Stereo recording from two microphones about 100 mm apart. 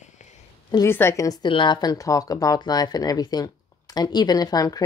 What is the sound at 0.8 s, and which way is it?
Speech, 25° left (ahead or behind).